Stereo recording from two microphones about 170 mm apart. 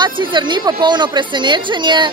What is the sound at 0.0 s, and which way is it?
A woman's voice, 25° right (ahead or behind).